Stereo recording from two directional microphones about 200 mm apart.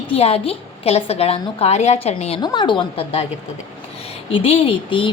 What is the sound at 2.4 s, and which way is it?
Speech, 20° left (ahead or behind).